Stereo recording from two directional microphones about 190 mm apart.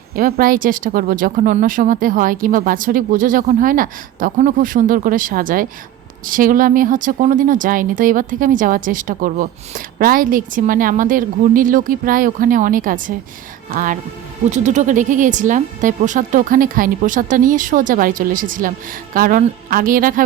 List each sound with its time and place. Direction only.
0.2 s speech: 50° right (ahead or behind)